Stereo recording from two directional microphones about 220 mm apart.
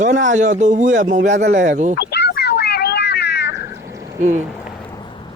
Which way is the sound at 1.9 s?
45° left (ahead or behind).